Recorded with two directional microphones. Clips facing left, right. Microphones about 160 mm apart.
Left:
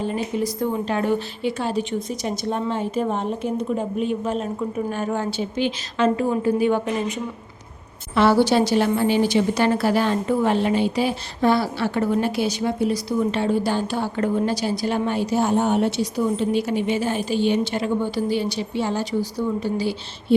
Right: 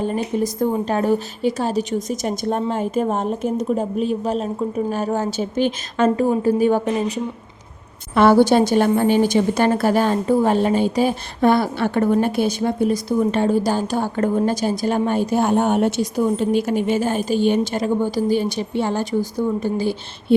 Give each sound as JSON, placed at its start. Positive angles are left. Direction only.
{"t": 0.0, "sound": "a woman's voice", "side_deg": -45}
{"t": 8.1, "sound": "a woman's voice", "side_deg": -50}